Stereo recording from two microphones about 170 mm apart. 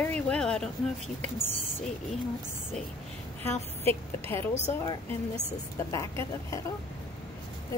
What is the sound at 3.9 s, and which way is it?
Speech, 15° left (ahead or behind).